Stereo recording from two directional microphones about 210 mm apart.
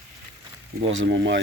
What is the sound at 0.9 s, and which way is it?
Speech, 60° right (ahead or behind).